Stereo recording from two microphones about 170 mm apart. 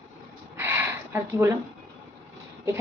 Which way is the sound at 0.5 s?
15° right (ahead or behind).